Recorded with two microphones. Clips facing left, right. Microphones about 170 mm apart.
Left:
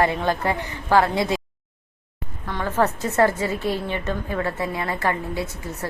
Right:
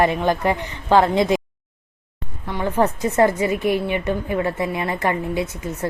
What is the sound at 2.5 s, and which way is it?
A woman's voice, 15° right (ahead or behind).